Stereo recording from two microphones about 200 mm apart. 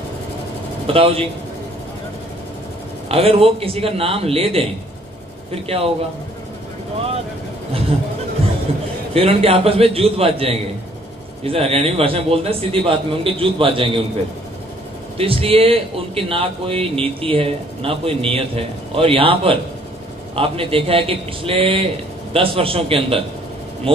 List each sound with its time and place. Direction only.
0.9 s a man's voice: 30° right (ahead or behind)
3.1 s a man's voice: 30° right (ahead or behind)
9.1 s a man's voice: 30° right (ahead or behind)
15.1 s a man's voice: 30° right (ahead or behind)